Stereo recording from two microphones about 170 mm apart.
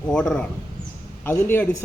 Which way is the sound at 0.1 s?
5° left (ahead or behind).